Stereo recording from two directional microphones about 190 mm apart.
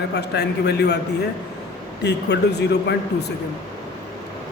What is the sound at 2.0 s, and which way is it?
Speech, 60° left (ahead or behind).